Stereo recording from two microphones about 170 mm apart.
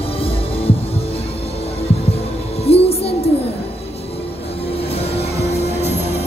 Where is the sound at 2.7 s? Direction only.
35° left (ahead or behind).